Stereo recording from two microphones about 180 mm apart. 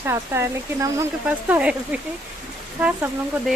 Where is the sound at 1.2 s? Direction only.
5° right (ahead or behind).